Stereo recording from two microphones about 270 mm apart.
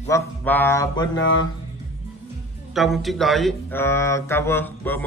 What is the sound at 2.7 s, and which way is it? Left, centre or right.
A man's voice, centre.